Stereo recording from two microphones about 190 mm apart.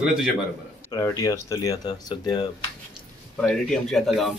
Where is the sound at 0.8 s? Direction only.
15° left (ahead or behind).